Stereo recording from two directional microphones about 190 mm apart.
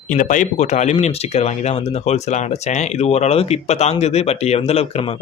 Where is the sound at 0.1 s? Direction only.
40° left (ahead or behind).